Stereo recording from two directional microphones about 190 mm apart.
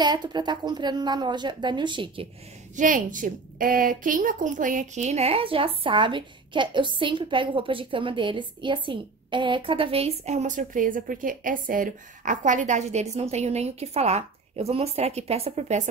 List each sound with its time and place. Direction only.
0.0 s a woman's voice: 20° right (ahead or behind)
2.7 s a woman's voice: 45° right (ahead or behind)